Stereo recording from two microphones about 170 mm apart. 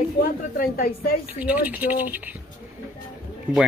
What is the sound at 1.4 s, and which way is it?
Speech, 10° right (ahead or behind).